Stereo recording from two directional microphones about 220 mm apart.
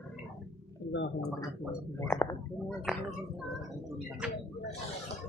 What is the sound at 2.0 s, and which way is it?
Speech, 10° left (ahead or behind).